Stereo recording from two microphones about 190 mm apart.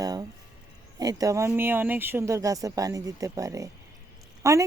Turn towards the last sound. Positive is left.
turn(degrees=-15)  # may be behind; listen again after turning